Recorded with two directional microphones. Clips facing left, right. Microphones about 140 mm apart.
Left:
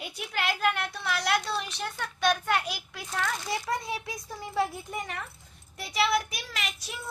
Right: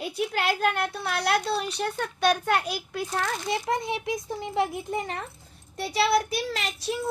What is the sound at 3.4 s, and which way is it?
Speech, 20° right (ahead or behind).